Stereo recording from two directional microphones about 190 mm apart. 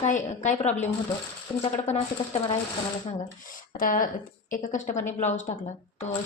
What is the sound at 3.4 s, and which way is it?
A woman's voice, 45° left (ahead or behind).